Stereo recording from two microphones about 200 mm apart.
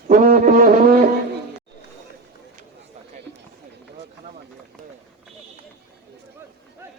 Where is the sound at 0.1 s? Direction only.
45° right (ahead or behind).